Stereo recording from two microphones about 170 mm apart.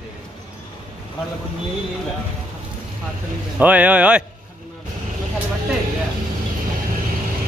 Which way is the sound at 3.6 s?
10° right (ahead or behind).